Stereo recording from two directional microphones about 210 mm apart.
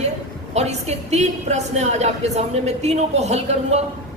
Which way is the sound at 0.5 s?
30° right (ahead or behind).